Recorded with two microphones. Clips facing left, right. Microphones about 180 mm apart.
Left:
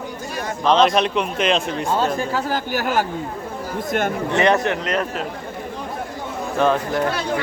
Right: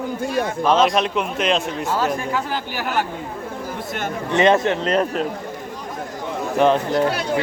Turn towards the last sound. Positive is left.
turn(degrees=-20)  # may be behind; listen again after turning